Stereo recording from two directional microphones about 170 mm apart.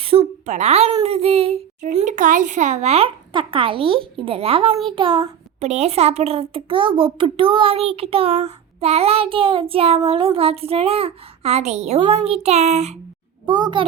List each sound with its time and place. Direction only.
0.0 s a woman's voice: 35° right (ahead or behind)
1.0 s child singing: 35° right (ahead or behind)
13.4 s a child's voice: 25° right (ahead or behind)